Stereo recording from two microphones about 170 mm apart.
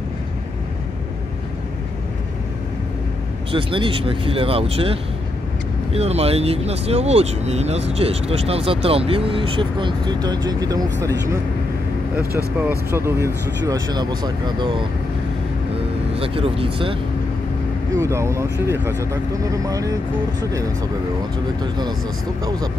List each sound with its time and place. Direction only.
3.5 s speech: 30° right (ahead or behind)
5.9 s speech: 40° right (ahead or behind); by 11.1 s 20° right (ahead or behind)
12.5 s speech: 10° right (ahead or behind)
16.2 s speech: 35° right (ahead or behind)
17.9 s speech: 15° right (ahead or behind)